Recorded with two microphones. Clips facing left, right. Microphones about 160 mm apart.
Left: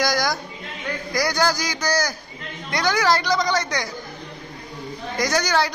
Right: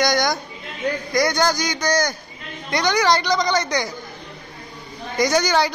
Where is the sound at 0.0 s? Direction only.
Centre (ahead or behind).